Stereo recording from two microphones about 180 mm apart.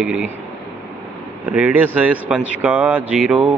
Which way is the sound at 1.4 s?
10° right (ahead or behind).